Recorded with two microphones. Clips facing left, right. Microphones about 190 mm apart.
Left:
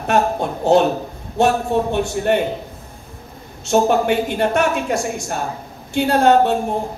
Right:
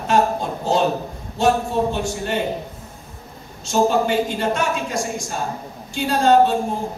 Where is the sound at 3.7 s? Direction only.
60° left (ahead or behind).